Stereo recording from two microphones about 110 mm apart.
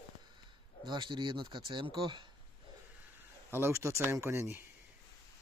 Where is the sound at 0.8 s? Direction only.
45° right (ahead or behind).